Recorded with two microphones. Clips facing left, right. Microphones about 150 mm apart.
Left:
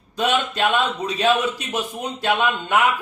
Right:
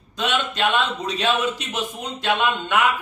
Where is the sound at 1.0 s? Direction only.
10° left (ahead or behind).